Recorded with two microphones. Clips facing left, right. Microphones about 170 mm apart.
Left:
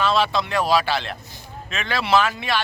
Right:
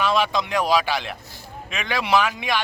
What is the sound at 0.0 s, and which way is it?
A man's voice, 15° right (ahead or behind).